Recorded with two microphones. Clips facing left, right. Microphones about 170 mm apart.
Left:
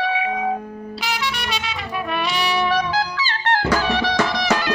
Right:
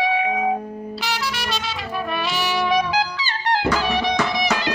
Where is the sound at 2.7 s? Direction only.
15° right (ahead or behind).